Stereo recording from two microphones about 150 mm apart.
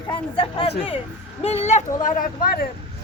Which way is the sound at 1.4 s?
45° left (ahead or behind).